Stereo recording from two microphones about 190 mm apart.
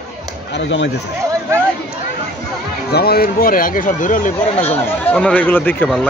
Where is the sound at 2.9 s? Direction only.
55° left (ahead or behind).